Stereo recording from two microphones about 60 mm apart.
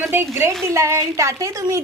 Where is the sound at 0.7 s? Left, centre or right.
Right.